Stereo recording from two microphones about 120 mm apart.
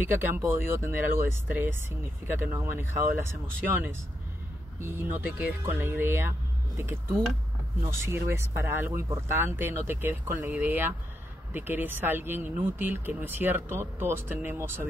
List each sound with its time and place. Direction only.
0.0 s speech: 20° right (ahead or behind)
4.7 s speech: 20° right (ahead or behind)